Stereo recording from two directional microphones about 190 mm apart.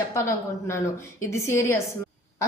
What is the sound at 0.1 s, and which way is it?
A woman's voice, 15° left (ahead or behind).